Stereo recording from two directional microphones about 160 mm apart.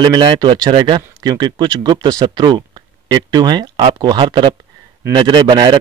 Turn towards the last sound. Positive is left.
turn(degrees=-30)  # may be behind; listen again after turning